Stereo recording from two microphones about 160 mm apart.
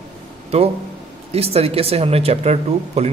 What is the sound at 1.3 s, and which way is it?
A man's voice, 40° right (ahead or behind).